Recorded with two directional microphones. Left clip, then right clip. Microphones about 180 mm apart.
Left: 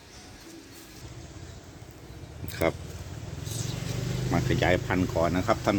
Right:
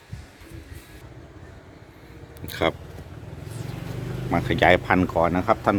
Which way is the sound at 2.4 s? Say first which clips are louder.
Right 4 dB; 5° right (ahead or behind).